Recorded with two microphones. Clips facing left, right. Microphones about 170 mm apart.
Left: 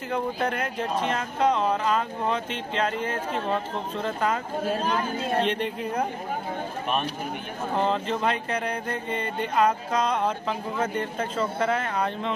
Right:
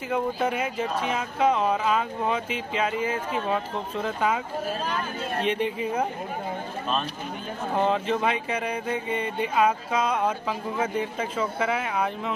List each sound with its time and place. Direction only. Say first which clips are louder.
0.1 s speech: right 1 dB; 5° right (ahead or behind)
5.4 s speech: right 1 dB; 5° right (ahead or behind)
7.7 s speech: right 2 dB; 5° right (ahead or behind)